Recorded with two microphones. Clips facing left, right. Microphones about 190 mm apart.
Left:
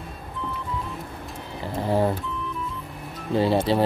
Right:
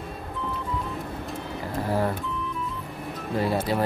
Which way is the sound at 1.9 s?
25° left (ahead or behind).